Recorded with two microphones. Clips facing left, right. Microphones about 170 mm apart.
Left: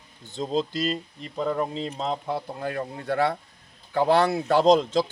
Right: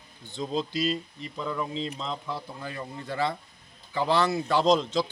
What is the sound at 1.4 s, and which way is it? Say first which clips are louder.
Speech: left 5 dB; 50° left (ahead or behind).